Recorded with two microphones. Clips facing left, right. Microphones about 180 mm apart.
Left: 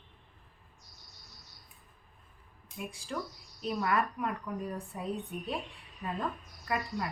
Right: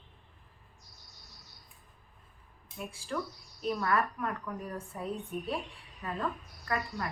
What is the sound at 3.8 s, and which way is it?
Speech, 15° left (ahead or behind).